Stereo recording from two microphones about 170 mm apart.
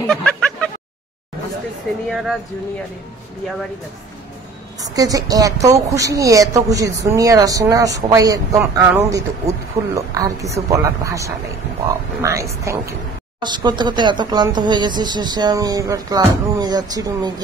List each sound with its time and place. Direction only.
0.1 s a sound: 5° left (ahead or behind)
2.0 s speech: centre (ahead or behind)
4.9 s a woman's voice: 20° right (ahead or behind)